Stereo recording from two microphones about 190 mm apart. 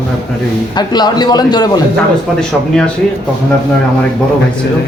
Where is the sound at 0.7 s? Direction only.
20° left (ahead or behind).